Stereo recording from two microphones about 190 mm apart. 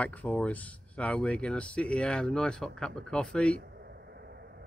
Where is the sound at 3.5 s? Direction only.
60° right (ahead or behind).